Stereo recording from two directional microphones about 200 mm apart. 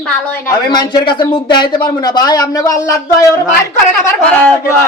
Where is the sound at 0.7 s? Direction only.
20° left (ahead or behind).